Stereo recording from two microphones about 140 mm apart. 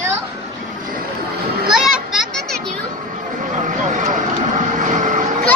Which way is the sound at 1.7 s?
5° right (ahead or behind).